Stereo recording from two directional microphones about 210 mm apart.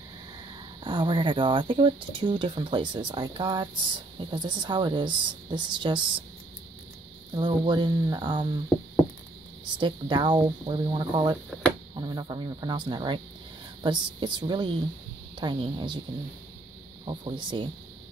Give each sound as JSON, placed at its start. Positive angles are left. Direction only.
{"t": 0.8, "sound": "speech", "side_deg": -20}
{"t": 7.3, "sound": "speech", "side_deg": -20}
{"t": 9.8, "sound": "speech", "side_deg": -20}
{"t": 17.0, "sound": "speech", "side_deg": -20}